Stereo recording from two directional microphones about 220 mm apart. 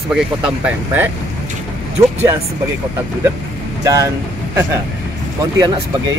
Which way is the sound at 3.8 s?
15° right (ahead or behind).